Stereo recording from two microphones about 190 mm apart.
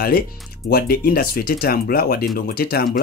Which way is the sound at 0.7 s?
55° left (ahead or behind).